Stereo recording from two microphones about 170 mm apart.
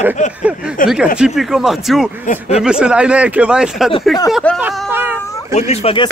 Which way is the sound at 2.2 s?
50° left (ahead or behind).